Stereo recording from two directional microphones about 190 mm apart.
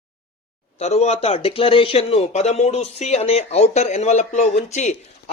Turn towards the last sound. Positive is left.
turn(degrees=40)  # may be behind; listen again after turning